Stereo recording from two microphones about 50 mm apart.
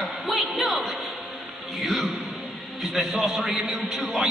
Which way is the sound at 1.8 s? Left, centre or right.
Centre.